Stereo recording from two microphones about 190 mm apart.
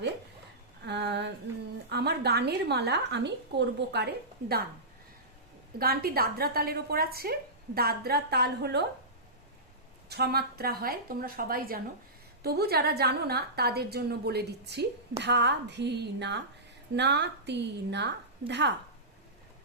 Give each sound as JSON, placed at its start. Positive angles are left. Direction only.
{"t": 0.8, "sound": "a sound", "side_deg": -65}
{"t": 1.9, "sound": "a woman's voice", "side_deg": -60}
{"t": 5.8, "sound": "a woman's voice", "side_deg": -50}
{"t": 10.1, "sound": "a woman's voice", "side_deg": -55}